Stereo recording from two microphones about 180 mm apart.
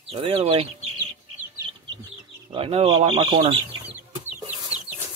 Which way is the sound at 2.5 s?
30° right (ahead or behind).